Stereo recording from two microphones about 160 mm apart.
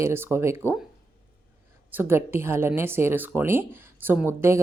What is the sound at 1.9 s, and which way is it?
Speech, 15° right (ahead or behind).